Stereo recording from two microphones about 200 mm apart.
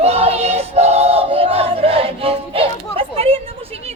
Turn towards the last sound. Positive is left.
turn(degrees=-30)  # may be behind; listen again after turning